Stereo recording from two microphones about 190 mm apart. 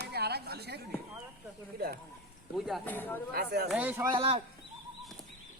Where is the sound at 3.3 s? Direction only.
55° right (ahead or behind).